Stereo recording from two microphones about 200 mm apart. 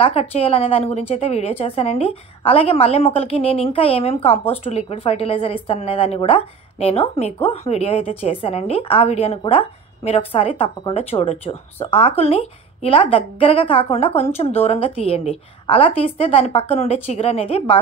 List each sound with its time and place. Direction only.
0.0 s a woman's voice: 30° left (ahead or behind)